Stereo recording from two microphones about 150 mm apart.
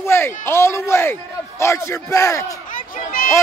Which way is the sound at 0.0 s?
15° left (ahead or behind).